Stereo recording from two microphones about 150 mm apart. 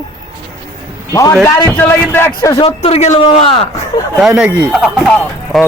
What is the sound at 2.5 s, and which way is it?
Speech, 40° left (ahead or behind).